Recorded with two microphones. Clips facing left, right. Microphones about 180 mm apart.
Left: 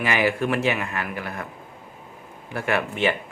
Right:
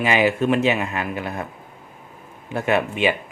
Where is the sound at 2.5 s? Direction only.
20° right (ahead or behind).